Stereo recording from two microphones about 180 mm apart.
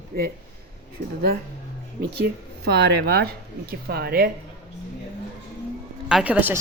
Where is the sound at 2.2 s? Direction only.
65° right (ahead or behind).